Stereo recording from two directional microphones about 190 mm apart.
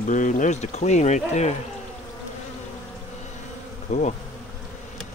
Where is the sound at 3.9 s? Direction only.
35° left (ahead or behind).